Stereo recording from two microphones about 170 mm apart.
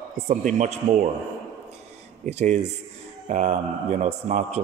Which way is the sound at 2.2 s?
40° right (ahead or behind).